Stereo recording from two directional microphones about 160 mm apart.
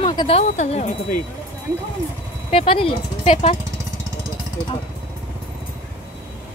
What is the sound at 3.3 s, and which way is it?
Speech, 50° left (ahead or behind).